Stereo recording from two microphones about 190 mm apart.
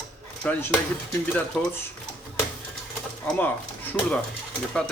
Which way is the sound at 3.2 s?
10° left (ahead or behind).